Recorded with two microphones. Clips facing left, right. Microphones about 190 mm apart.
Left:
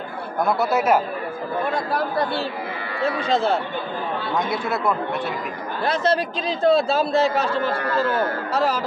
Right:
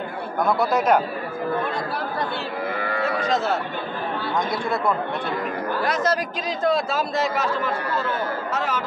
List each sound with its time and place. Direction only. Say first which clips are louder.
0.5 s speech: even; 5° left (ahead or behind)
3.0 s a man's voice: left 3 dB; 30° left (ahead or behind)
4.5 s speech: even; 5° left (ahead or behind)
6.6 s a man's voice: left 5 dB; 30° left (ahead or behind)